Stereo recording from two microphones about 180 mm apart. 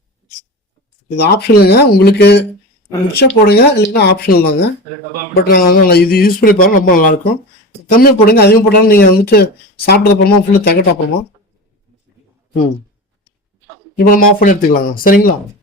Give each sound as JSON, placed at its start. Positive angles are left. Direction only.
{"t": 1.1, "sound": "speech", "side_deg": 65}
{"t": 14.1, "sound": "speech", "side_deg": 45}